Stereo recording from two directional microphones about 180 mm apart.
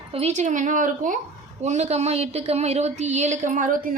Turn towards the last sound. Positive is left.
turn(degrees=-50)  # may be behind; listen again after turning